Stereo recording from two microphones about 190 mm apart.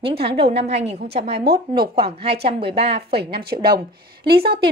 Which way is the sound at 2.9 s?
60° right (ahead or behind).